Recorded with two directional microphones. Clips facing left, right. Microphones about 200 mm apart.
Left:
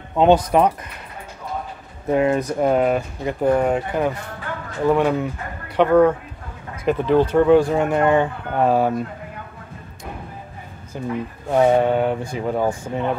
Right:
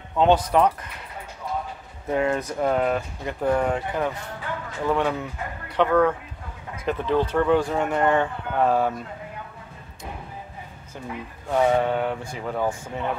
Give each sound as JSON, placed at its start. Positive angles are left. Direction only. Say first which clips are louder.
{"t": 0.1, "sound": "speech", "louder": "left 4 dB", "side_deg": 15}
{"t": 2.1, "sound": "speech", "louder": "left 5 dB", "side_deg": 15}
{"t": 11.4, "sound": "speech", "louder": "left 4 dB", "side_deg": 25}